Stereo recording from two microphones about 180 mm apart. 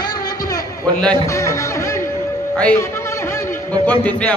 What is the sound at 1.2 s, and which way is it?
Speech, 15° left (ahead or behind).